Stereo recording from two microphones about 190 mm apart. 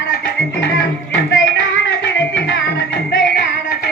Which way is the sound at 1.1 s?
65° left (ahead or behind).